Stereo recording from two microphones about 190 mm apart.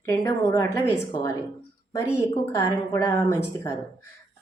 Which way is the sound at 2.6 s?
15° left (ahead or behind).